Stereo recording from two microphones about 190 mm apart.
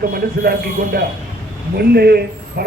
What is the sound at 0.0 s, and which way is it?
Speech, 55° right (ahead or behind).